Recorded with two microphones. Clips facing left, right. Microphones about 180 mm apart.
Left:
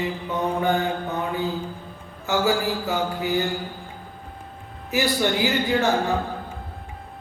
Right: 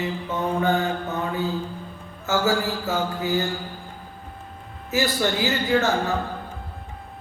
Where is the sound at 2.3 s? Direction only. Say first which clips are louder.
Even; 15° left (ahead or behind).